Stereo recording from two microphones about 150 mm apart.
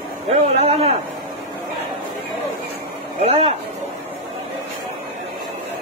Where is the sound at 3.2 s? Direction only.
45° right (ahead or behind).